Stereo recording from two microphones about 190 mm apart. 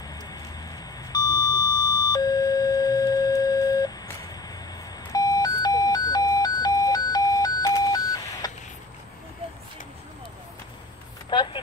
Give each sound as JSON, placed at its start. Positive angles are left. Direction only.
{"t": 1.1, "sound": "beep", "side_deg": 20}
{"t": 5.1, "sound": "alarm clock", "side_deg": 20}
{"t": 11.2, "sound": "vehicle", "side_deg": 25}